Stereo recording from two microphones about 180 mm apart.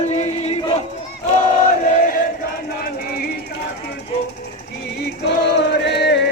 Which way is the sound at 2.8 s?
55° left (ahead or behind).